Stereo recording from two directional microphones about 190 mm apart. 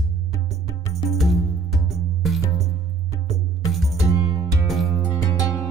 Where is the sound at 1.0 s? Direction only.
Centre (ahead or behind).